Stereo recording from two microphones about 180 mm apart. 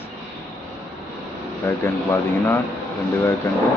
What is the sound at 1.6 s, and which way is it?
Speech, 10° left (ahead or behind).